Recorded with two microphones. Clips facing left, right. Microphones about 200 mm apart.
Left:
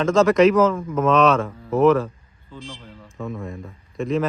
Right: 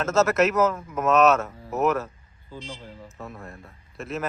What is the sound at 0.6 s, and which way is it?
Speech, 10° right (ahead or behind).